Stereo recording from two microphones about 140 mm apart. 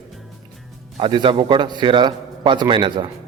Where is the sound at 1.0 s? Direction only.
35° right (ahead or behind).